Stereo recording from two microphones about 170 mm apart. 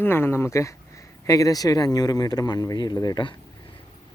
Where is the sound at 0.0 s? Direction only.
15° left (ahead or behind).